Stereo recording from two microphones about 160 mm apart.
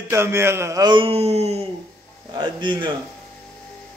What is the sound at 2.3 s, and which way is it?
Speech, 30° right (ahead or behind).